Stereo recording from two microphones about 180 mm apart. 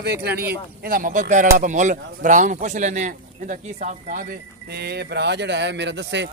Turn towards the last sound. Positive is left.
turn(degrees=-75)  # may be behind; listen again after turning